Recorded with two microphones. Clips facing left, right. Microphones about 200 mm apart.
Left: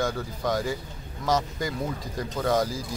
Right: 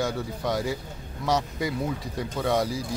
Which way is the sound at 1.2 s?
5° right (ahead or behind).